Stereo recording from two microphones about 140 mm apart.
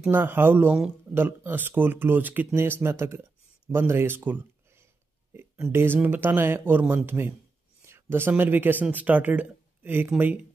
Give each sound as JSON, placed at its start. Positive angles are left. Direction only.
{"t": 0.1, "sound": "speech", "side_deg": -15}